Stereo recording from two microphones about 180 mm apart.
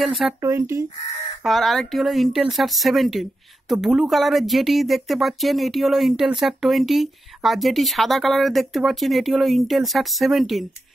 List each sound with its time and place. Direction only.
0.0 s speech: centre (ahead or behind)
0.4 s speech: 15° right (ahead or behind)
1.4 s speech: centre (ahead or behind)